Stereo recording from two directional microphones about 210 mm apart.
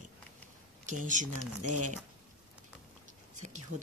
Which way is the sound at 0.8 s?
35° right (ahead or behind).